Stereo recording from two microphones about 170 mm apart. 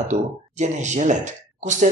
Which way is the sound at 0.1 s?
45° right (ahead or behind).